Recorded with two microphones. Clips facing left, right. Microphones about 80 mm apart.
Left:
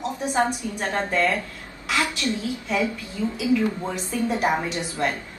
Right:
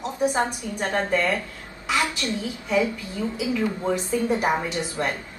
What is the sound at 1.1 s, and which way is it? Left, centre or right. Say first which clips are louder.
Speech: left 2 dB; centre.